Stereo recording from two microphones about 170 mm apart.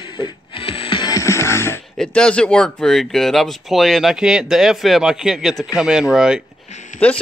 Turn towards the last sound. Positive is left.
turn(degrees=45)  # may be behind; listen again after turning